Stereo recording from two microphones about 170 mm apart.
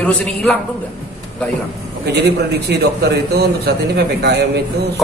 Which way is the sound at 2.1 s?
75° right (ahead or behind).